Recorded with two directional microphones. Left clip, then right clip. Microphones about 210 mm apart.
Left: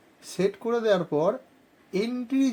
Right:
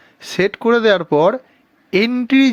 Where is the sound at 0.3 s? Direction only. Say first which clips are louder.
Right 11 dB; 30° right (ahead or behind).